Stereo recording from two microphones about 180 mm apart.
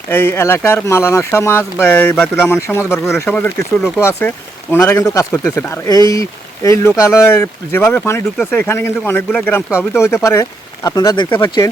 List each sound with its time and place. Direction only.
0.1 s speech: 10° left (ahead or behind)
9.6 s speech: centre (ahead or behind)
10.8 s speech: 20° left (ahead or behind)